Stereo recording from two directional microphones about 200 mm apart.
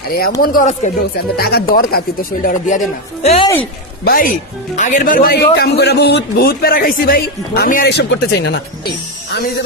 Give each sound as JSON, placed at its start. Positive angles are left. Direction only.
{"t": 0.4, "sound": "speech", "side_deg": 45}
{"t": 1.3, "sound": "speech", "side_deg": 50}
{"t": 4.0, "sound": "speech", "side_deg": 45}